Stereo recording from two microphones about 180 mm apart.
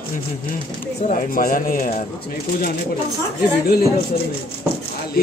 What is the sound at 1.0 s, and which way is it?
Speech, 50° left (ahead or behind).